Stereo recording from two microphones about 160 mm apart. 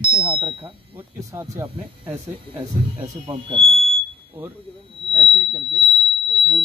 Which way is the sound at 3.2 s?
35° right (ahead or behind).